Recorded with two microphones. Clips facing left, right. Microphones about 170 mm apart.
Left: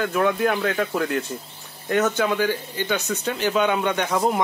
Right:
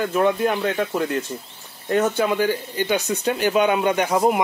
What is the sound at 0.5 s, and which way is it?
Speech, 5° right (ahead or behind).